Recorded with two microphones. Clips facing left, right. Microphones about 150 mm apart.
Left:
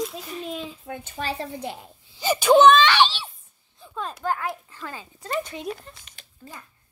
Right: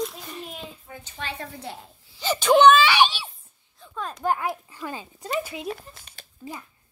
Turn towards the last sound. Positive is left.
turn(degrees=-40)  # may be behind; listen again after turning